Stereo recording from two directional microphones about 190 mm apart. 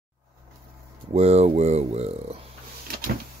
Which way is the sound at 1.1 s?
35° right (ahead or behind).